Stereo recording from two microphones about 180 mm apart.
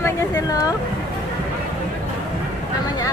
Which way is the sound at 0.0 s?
20° left (ahead or behind).